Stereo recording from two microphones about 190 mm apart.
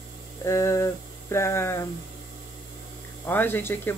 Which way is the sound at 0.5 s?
15° left (ahead or behind).